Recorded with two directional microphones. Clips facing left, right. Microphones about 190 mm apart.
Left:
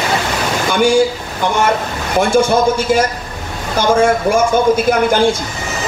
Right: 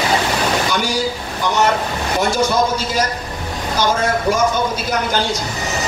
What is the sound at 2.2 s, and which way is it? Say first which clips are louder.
A man's voice: left 5 dB; 50° left (ahead or behind).